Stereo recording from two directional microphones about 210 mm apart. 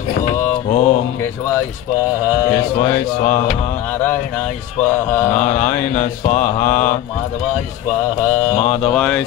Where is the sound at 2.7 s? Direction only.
35° left (ahead or behind).